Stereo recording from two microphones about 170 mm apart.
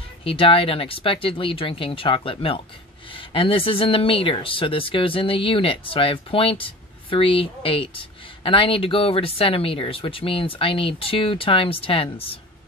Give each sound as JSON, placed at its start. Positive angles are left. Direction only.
{"t": 0.2, "sound": "speech", "side_deg": 30}